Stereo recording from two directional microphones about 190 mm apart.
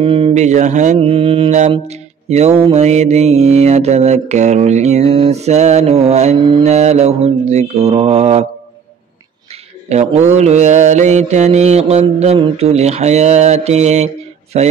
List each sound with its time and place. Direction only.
0.0 s mantra: 30° right (ahead or behind)
9.8 s mantra: 35° right (ahead or behind)